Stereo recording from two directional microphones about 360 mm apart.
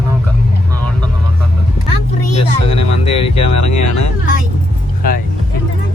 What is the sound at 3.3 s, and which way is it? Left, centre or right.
Speech, left.